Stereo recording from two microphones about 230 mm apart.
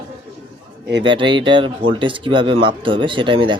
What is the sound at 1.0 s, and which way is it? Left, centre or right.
Speech, right.